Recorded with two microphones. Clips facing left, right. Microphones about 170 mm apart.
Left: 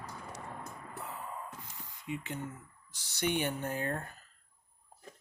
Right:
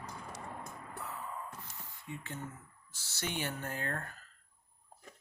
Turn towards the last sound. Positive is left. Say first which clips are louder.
# left 4 dB
turn(degrees=15)  # may be behind; listen again after turning